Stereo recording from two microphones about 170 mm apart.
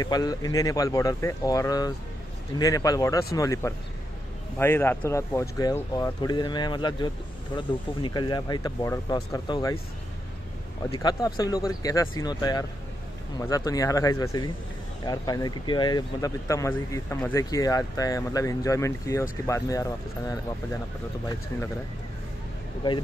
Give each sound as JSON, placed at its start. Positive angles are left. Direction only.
{"t": 0.0, "sound": "speech", "side_deg": 20}
{"t": 10.9, "sound": "speech", "side_deg": 25}